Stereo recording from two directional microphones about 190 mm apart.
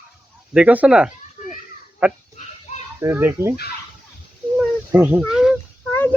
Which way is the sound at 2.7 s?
35° left (ahead or behind).